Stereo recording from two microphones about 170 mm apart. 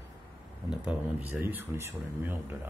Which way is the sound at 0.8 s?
10° right (ahead or behind).